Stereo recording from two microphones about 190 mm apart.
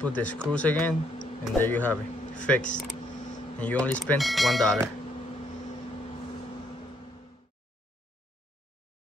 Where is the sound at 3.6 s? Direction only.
5° left (ahead or behind).